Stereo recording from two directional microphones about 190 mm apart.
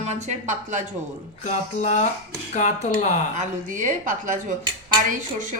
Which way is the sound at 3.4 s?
40° right (ahead or behind).